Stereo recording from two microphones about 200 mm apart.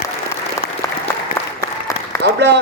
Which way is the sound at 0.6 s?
50° left (ahead or behind).